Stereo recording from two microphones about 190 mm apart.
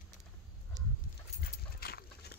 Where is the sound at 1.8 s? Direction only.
55° left (ahead or behind).